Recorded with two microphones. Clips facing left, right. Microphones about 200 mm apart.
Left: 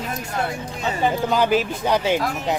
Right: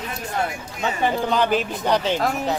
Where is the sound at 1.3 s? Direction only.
5° left (ahead or behind).